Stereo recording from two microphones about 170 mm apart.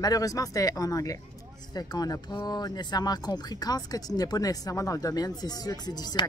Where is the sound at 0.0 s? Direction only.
20° left (ahead or behind).